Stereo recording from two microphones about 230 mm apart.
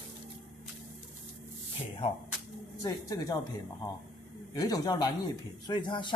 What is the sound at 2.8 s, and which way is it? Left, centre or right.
Speech, centre.